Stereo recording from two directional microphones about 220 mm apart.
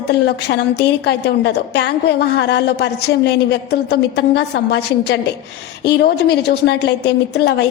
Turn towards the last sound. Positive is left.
turn(degrees=50)  # may be behind; listen again after turning